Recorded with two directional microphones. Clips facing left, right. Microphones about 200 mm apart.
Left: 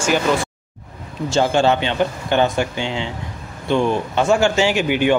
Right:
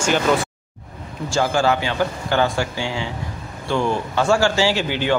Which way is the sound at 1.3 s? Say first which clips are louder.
Left 3 dB; 25° left (ahead or behind).